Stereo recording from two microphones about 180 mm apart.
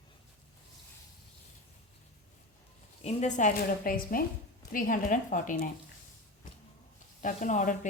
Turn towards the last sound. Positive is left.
turn(degrees=45)  # may be behind; listen again after turning